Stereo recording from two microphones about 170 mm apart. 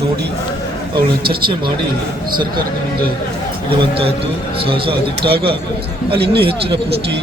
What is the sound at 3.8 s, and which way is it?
Speech, 35° right (ahead or behind).